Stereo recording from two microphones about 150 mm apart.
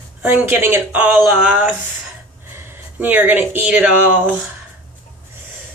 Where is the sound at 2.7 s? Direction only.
10° right (ahead or behind).